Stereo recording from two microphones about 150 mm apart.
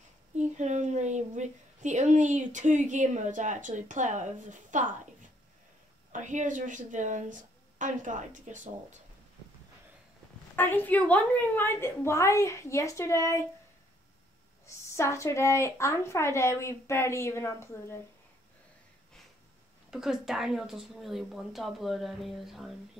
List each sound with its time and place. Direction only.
0.6 s speech: 50° right (ahead or behind)
6.1 s speech: 55° right (ahead or behind)
10.5 s a woman's voice: 15° left (ahead or behind)
15.0 s a woman's voice: 20° left (ahead or behind)
19.9 s a woman's voice: 5° right (ahead or behind)